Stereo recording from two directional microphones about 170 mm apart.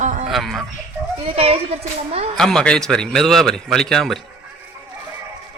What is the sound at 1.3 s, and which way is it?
Speech, 35° right (ahead or behind).